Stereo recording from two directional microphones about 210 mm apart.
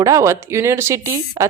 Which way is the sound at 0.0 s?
15° right (ahead or behind).